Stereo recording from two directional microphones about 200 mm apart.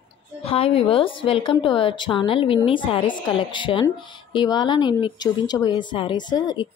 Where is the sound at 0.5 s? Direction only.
30° left (ahead or behind).